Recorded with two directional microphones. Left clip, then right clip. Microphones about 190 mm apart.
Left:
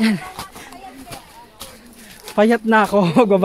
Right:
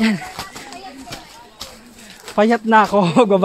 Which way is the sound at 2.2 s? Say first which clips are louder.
Even; 5° left (ahead or behind).